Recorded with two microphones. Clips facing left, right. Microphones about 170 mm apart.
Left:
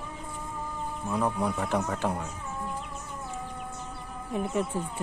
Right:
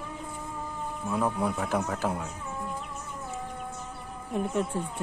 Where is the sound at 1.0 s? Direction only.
5° right (ahead or behind).